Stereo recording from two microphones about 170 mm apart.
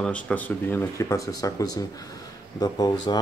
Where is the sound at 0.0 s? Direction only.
10° left (ahead or behind).